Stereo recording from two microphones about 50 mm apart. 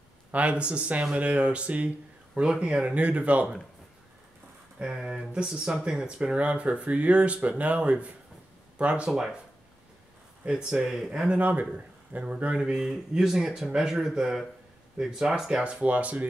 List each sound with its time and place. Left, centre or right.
0.3 s speech: right
4.7 s speech: centre
10.4 s speech: centre
11.1 s speech: right